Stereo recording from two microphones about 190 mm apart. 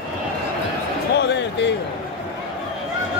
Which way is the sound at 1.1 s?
65° left (ahead or behind).